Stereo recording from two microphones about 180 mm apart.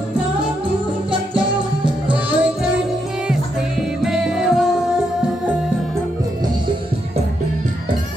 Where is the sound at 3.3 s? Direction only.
5° right (ahead or behind).